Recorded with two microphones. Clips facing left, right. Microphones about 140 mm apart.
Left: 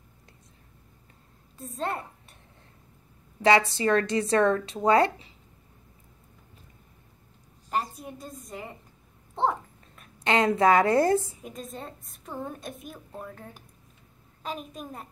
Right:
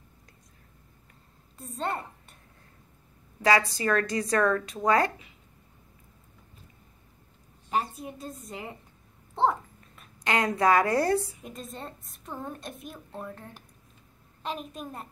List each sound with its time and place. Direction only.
1.6 s a woman's voice: centre (ahead or behind)
3.4 s speech: 25° left (ahead or behind)
8.0 s a woman's voice: centre (ahead or behind)
9.3 s a sound: centre (ahead or behind)
10.2 s speech: 25° left (ahead or behind)
11.4 s a woman's voice: centre (ahead or behind)